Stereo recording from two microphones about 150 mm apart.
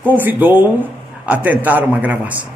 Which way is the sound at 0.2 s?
10° right (ahead or behind).